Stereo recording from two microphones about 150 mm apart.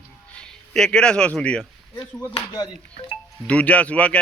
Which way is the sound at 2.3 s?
25° left (ahead or behind).